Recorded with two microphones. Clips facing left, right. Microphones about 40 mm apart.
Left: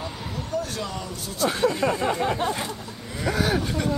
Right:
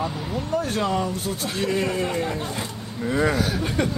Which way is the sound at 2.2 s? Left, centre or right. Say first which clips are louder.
Left 4 dB; left.